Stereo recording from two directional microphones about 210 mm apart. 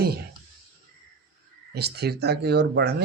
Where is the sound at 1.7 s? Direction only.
50° right (ahead or behind).